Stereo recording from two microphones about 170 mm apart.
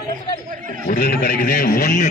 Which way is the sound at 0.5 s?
50° right (ahead or behind).